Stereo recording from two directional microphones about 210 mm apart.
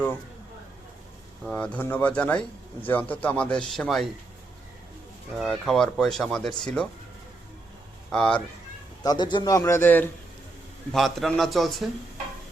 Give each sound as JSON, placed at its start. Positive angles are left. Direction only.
{"t": 1.5, "sound": "speech", "side_deg": 5}
{"t": 5.4, "sound": "speech", "side_deg": 0}
{"t": 8.1, "sound": "speech", "side_deg": 5}
{"t": 9.0, "sound": "a man's voice", "side_deg": 20}